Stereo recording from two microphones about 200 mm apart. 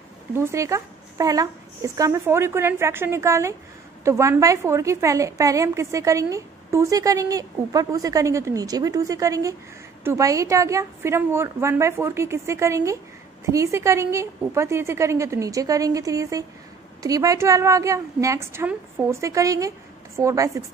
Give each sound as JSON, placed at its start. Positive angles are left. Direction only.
{"t": 0.4, "sound": "a woman's voice", "side_deg": -15}